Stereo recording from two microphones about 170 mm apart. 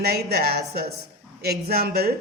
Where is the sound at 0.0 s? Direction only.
65° right (ahead or behind).